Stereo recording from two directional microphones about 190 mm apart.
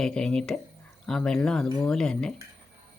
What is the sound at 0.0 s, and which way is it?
Speech, 5° left (ahead or behind).